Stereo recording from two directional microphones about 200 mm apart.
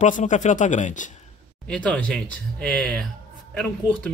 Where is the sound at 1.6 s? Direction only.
5° left (ahead or behind).